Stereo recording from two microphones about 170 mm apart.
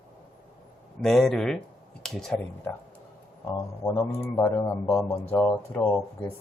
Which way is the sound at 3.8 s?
15° left (ahead or behind).